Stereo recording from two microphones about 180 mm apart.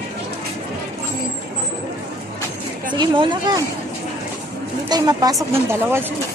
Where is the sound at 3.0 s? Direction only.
25° right (ahead or behind).